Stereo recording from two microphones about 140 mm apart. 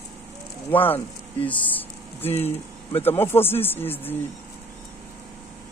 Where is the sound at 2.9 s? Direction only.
15° left (ahead or behind).